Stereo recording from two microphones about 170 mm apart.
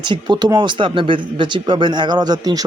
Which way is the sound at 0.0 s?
25° right (ahead or behind).